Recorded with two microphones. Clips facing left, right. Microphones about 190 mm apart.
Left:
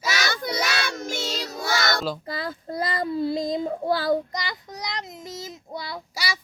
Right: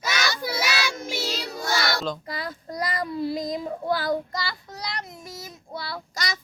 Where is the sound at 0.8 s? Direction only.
45° left (ahead or behind).